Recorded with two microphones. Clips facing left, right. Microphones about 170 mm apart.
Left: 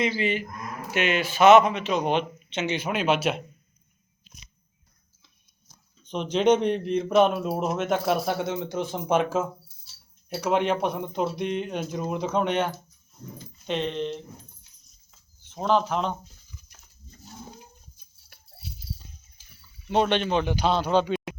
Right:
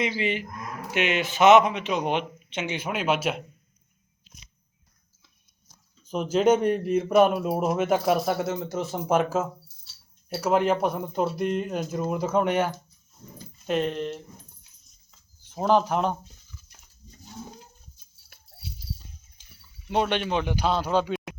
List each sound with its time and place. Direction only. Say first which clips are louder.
0.0 s speech: left 1 dB; 15° right (ahead or behind)
6.0 s speech: right 2 dB; 5° right (ahead or behind)
15.4 s speech: right 2 dB; 10° right (ahead or behind)
19.9 s speech: left 2 dB; 10° right (ahead or behind)